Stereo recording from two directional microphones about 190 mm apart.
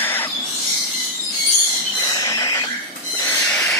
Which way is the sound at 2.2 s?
15° left (ahead or behind).